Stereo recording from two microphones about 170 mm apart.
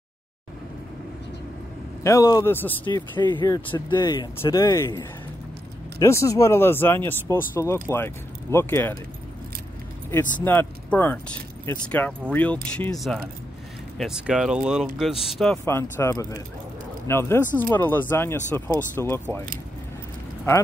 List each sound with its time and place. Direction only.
2.0 s speech: 20° left (ahead or behind)
3.3 s speech: 25° left (ahead or behind)
5.9 s speech: 20° left (ahead or behind)
10.4 s speech: 10° left (ahead or behind)
15.6 s speech: 15° left (ahead or behind)